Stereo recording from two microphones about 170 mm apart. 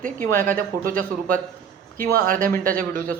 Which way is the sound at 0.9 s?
55° right (ahead or behind).